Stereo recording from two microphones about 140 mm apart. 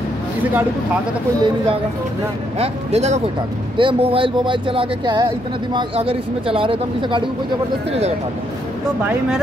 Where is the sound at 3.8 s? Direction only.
40° right (ahead or behind).